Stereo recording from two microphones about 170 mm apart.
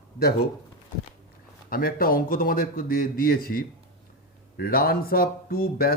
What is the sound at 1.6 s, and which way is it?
Speech, 55° left (ahead or behind).